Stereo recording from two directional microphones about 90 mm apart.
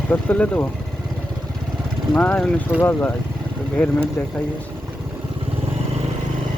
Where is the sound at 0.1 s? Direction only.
15° left (ahead or behind).